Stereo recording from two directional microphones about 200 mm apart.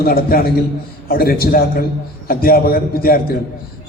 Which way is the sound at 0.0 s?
50° left (ahead or behind).